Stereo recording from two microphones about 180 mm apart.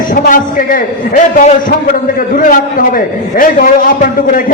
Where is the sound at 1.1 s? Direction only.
40° left (ahead or behind).